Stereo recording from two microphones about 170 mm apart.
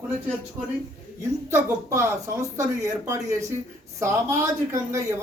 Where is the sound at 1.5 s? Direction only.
15° right (ahead or behind).